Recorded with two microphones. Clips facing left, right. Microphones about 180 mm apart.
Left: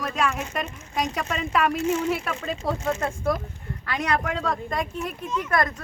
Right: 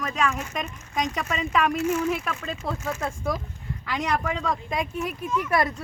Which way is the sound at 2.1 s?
5° left (ahead or behind).